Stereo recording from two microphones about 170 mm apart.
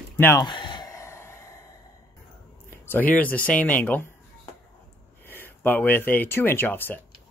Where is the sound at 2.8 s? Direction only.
10° left (ahead or behind).